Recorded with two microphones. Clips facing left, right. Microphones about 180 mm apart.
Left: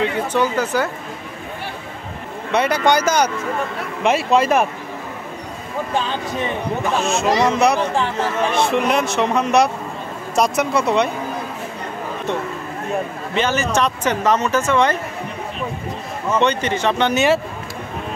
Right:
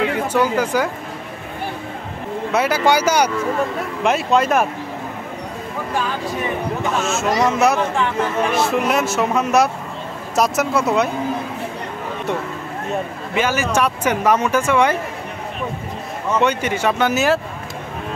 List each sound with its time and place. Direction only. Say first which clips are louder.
0.3 s speech: right 1 dB; 10° right (ahead or behind)
2.5 s speech: even; 5° right (ahead or behind)
5.9 s speech: even; 25° left (ahead or behind)
7.1 s speech: left 1 dB; centre (ahead or behind)
7.9 s speech: even; 30° left (ahead or behind)
8.5 s speech: left 1 dB; 5° right (ahead or behind)
13.3 s speech: even; 10° right (ahead or behind)
16.3 s speech: even; 10° right (ahead or behind)